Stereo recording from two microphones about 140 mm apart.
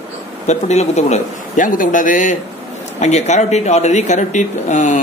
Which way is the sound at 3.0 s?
55° left (ahead or behind).